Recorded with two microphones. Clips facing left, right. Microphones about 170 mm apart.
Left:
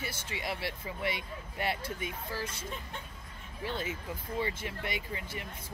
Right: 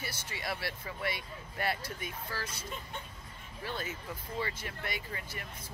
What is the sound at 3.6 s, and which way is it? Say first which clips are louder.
Speech: left 3 dB; 25° left (ahead or behind).